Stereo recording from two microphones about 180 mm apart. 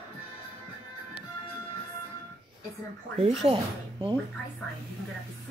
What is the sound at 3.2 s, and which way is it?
Speech, 35° right (ahead or behind).